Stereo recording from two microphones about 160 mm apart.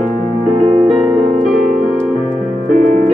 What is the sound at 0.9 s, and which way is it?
Music, 5° right (ahead or behind).